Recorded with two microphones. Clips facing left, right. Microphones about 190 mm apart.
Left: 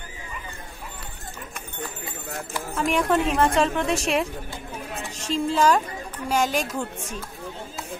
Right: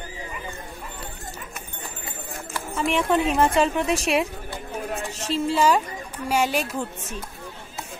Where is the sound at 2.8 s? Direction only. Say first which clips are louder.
Even; centre (ahead or behind).